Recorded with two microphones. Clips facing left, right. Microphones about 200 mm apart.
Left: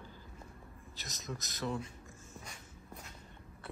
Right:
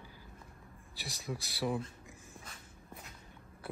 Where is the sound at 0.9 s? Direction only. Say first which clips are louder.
Right 3 dB; 10° right (ahead or behind).